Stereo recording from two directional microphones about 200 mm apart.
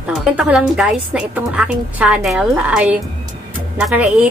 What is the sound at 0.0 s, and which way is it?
A woman's voice, 5° right (ahead or behind).